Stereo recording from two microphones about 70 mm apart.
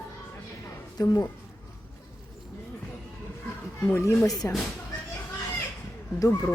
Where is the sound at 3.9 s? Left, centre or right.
Left.